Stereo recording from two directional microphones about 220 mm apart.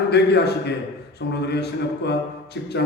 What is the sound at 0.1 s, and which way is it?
Speech, 50° left (ahead or behind).